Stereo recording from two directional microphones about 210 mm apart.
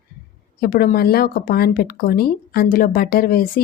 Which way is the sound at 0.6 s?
45° left (ahead or behind).